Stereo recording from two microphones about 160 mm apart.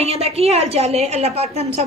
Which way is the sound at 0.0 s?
40° right (ahead or behind).